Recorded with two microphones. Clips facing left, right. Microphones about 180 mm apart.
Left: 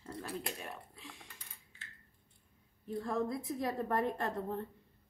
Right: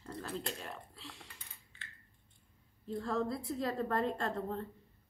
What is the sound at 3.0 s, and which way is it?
A woman's voice, 15° left (ahead or behind).